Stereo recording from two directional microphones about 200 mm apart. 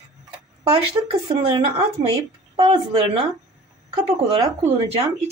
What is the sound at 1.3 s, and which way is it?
A woman's voice, 25° right (ahead or behind).